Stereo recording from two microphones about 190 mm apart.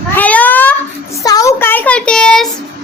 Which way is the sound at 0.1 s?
10° left (ahead or behind).